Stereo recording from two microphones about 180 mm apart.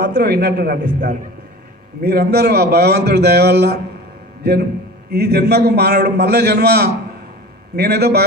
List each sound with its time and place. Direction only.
0.0 s a man's voice: 65° right (ahead or behind)
5.1 s a man's voice: 65° right (ahead or behind)